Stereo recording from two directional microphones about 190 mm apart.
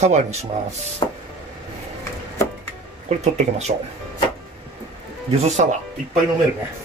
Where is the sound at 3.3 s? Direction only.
35° right (ahead or behind).